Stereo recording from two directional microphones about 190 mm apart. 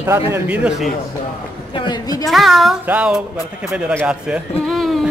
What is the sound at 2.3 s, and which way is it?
A man's voice, centre (ahead or behind).